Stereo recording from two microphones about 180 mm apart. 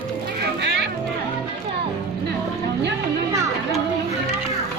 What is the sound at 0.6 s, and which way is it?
Music, 75° right (ahead or behind).